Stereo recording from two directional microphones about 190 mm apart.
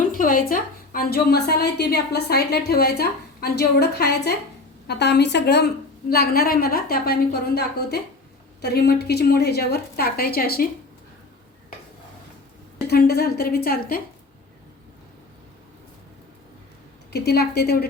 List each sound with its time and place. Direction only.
0.1 s a woman's voice: 45° left (ahead or behind)
12.9 s a woman's voice: 55° left (ahead or behind)
17.1 s a woman's voice: 60° left (ahead or behind)